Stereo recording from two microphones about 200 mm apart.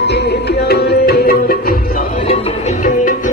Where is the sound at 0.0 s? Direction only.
55° left (ahead or behind).